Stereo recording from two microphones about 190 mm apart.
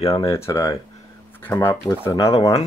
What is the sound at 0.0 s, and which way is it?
Speech, 15° left (ahead or behind).